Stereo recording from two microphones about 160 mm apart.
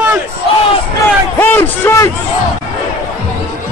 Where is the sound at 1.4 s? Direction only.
15° left (ahead or behind).